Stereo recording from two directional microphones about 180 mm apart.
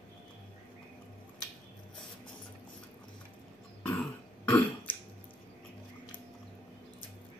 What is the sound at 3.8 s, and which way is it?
Throat clearing, 5° left (ahead or behind).